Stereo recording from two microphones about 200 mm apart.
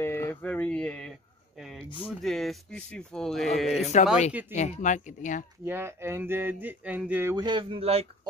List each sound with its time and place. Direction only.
0.0 s a sound: 10° left (ahead or behind)
2.0 s speech: centre (ahead or behind)
3.9 s speech: 35° left (ahead or behind)
4.3 s speech: 10° right (ahead or behind)
4.6 s speech: 35° left (ahead or behind)
5.7 s speech: 10° right (ahead or behind)
7.4 s speech: 25° right (ahead or behind)